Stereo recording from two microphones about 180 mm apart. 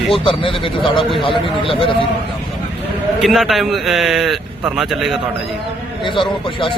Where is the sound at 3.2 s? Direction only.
Centre (ahead or behind).